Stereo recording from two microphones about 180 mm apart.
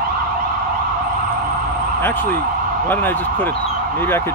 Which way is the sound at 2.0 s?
10° left (ahead or behind).